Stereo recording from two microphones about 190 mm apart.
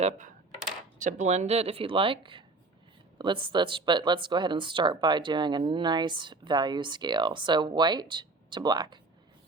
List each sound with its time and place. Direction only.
0.0 s speech: 40° right (ahead or behind); by 9.0 s 20° right (ahead or behind)